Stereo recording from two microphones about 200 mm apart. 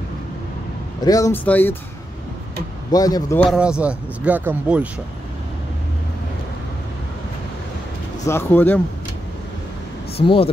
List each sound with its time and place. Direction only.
1.0 s speech: 15° left (ahead or behind)
2.9 s speech: 20° left (ahead or behind)
3.3 s speech: centre (ahead or behind)
8.3 s speech: 10° left (ahead or behind)
10.1 s speech: 25° left (ahead or behind)